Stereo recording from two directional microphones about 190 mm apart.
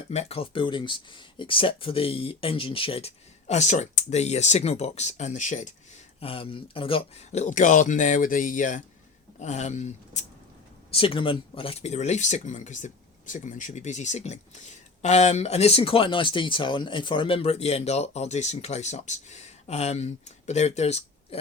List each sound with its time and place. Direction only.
0.1 s speech: 35° left (ahead or behind)